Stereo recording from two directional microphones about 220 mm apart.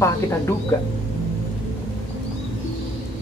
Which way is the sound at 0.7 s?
15° left (ahead or behind).